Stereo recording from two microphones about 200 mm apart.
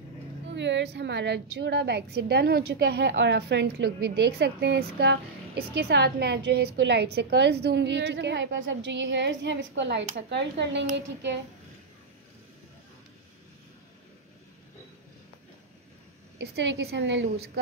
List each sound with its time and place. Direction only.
0.5 s a woman's voice: 65° right (ahead or behind)
16.3 s a woman's voice: 60° right (ahead or behind)